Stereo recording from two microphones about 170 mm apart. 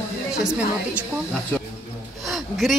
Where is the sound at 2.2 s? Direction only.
Centre (ahead or behind).